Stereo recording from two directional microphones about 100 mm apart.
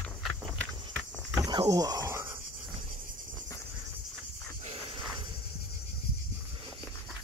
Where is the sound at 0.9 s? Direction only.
10° left (ahead or behind).